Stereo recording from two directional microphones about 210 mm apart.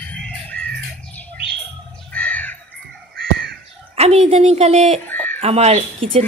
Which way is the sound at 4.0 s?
30° right (ahead or behind).